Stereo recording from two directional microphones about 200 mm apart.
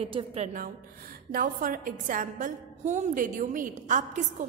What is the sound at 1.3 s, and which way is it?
A woman's voice, 45° right (ahead or behind).